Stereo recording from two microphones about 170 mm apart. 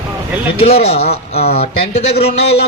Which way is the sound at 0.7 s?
40° left (ahead or behind).